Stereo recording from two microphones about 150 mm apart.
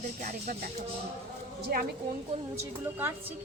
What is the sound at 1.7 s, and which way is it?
Speech, 85° right.